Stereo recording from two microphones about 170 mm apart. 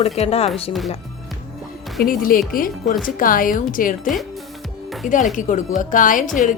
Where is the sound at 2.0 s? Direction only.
55° left (ahead or behind).